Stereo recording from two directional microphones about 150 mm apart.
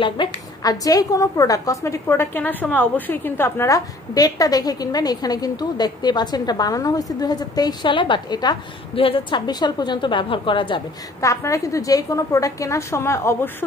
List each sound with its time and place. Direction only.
0.0 s a woman's voice: 30° left (ahead or behind)
11.1 s a woman's voice: 20° left (ahead or behind)